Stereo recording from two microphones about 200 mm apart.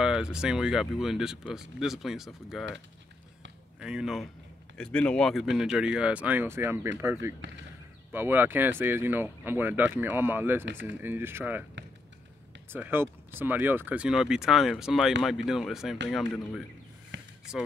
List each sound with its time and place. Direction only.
0.0 s speech: 5° right (ahead or behind)
3.8 s speech: 5° right (ahead or behind)
12.6 s speech: 10° right (ahead or behind)
17.1 s a sound: 65° right (ahead or behind)
17.5 s speech: 5° right (ahead or behind)